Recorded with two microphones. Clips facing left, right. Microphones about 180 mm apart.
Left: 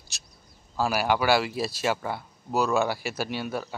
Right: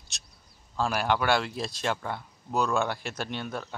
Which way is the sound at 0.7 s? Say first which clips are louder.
Left 2 dB; 5° left (ahead or behind).